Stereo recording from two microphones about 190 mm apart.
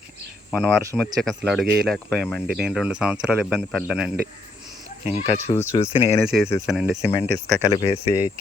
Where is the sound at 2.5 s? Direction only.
Centre (ahead or behind).